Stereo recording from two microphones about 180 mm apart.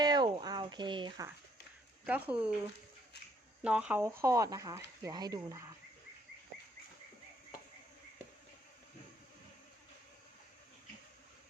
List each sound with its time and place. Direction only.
0.0 s speech: 20° right (ahead or behind)
2.0 s speech: 10° right (ahead or behind)
3.6 s speech: 5° right (ahead or behind)